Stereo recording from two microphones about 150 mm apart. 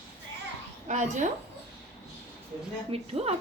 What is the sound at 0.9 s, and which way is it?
Speech, 55° right (ahead or behind).